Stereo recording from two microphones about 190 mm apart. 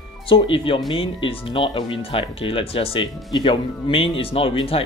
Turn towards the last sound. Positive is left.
turn(degrees=30)  # may be behind; listen again after turning